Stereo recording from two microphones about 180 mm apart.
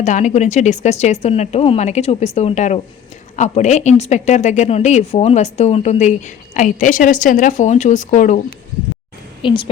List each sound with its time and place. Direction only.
0.0 s speech: 40° left (ahead or behind)
9.4 s a woman's voice: 30° left (ahead or behind)